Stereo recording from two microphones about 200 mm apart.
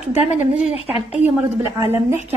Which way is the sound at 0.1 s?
30° left (ahead or behind).